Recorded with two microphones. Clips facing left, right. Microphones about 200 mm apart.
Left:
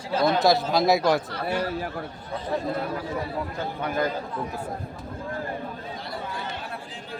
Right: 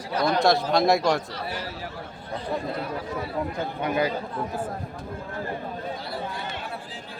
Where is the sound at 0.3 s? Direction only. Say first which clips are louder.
Even; centre (ahead or behind).